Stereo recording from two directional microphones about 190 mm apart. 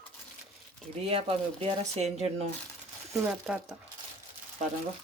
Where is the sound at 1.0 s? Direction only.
30° right (ahead or behind).